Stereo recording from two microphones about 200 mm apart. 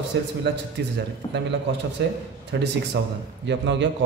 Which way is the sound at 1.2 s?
25° left (ahead or behind).